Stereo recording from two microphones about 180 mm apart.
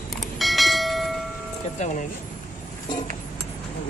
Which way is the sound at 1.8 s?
40° left (ahead or behind).